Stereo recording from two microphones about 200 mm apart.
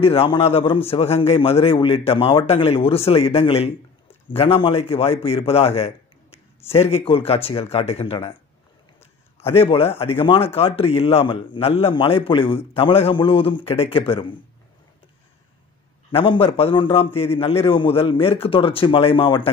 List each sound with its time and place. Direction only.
0.0 s a man's voice: 25° left (ahead or behind)
9.6 s a man's voice: 30° left (ahead or behind)
16.1 s a man's voice: 25° left (ahead or behind)